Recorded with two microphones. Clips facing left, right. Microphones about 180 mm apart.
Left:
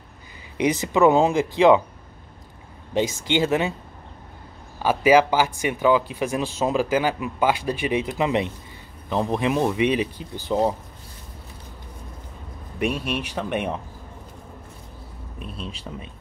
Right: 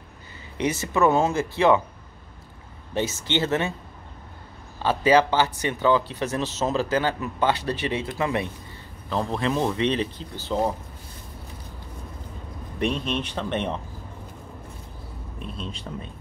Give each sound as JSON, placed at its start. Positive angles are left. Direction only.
{"t": 0.6, "sound": "speech", "side_deg": 15}
{"t": 2.9, "sound": "speech", "side_deg": 15}
{"t": 4.8, "sound": "speech", "side_deg": 10}
{"t": 12.7, "sound": "speech", "side_deg": 5}
{"t": 15.5, "sound": "speech", "side_deg": 5}